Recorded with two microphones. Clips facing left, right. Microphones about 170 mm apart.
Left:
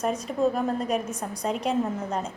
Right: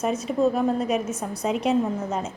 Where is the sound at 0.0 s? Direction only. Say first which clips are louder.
Right 2 dB; 5° right (ahead or behind).